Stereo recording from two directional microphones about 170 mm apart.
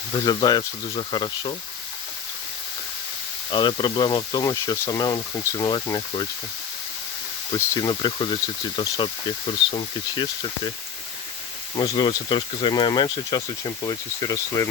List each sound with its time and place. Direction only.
0.3 s speech: 25° left (ahead or behind)
3.5 s speech: 30° left (ahead or behind)
7.5 s speech: 25° left (ahead or behind)
11.8 s speech: 30° left (ahead or behind)